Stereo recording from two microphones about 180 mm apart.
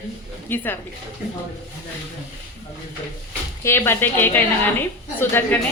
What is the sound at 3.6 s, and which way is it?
A woman's voice, 15° left (ahead or behind).